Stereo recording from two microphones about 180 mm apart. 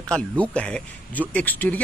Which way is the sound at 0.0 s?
5° left (ahead or behind).